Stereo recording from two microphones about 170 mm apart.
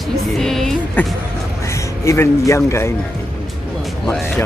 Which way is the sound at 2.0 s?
15° left (ahead or behind).